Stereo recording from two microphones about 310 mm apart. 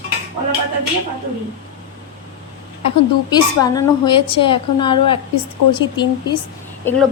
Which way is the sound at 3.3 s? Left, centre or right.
Centre.